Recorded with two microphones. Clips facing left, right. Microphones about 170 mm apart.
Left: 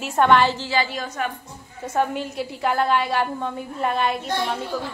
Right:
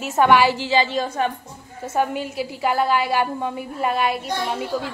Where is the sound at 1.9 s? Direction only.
5° right (ahead or behind).